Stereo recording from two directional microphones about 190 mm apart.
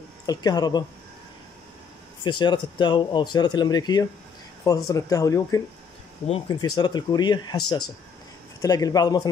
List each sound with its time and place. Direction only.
0.3 s speech: 20° left (ahead or behind)
2.2 s speech: 25° left (ahead or behind)